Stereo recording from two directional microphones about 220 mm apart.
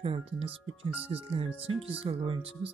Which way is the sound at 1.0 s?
25° right (ahead or behind).